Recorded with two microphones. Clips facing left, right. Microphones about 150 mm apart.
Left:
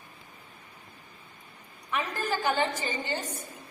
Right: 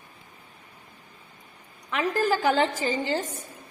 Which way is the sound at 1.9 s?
90° right.